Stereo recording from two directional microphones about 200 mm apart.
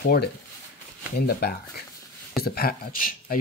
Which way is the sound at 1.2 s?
50° left (ahead or behind).